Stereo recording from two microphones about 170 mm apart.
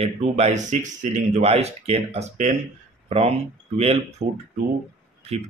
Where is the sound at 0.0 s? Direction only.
40° right (ahead or behind).